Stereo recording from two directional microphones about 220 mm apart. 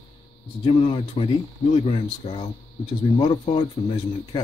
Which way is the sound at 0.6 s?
25° left (ahead or behind).